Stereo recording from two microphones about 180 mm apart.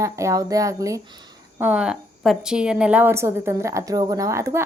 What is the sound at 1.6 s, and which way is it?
A woman's voice, 5° right (ahead or behind).